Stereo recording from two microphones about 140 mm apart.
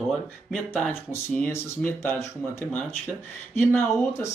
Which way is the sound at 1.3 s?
15° left (ahead or behind).